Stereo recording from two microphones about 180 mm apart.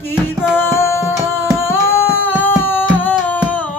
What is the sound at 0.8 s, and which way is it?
Music, 15° left (ahead or behind).